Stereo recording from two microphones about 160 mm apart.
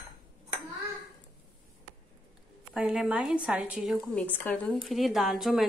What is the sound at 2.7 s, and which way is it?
A woman's voice, 5° right (ahead or behind).